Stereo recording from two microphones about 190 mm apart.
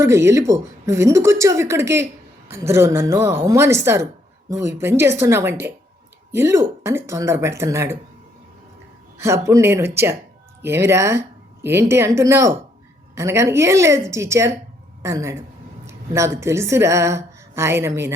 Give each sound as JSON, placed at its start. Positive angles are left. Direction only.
{"t": 0.0, "sound": "speech", "side_deg": -15}
{"t": 9.1, "sound": "a woman's voice", "side_deg": -15}